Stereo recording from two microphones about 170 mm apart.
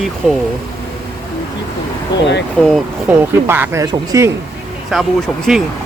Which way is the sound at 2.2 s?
90° left.